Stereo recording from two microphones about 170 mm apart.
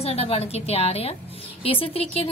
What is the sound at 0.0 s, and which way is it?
A woman's voice, 35° left (ahead or behind).